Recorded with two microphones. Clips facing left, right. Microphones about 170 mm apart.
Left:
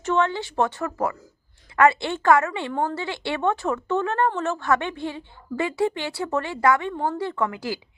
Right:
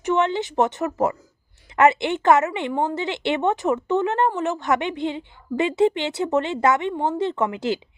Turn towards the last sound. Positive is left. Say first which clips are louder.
# right 4 dB
turn(degrees=-20)  # may be behind; listen again after turning